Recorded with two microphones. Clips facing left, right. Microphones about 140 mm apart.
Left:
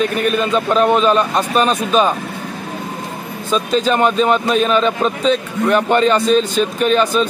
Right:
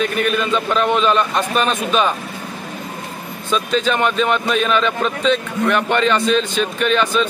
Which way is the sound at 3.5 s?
40° left (ahead or behind).